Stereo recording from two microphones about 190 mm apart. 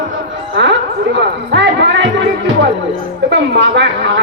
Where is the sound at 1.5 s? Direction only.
65° right (ahead or behind).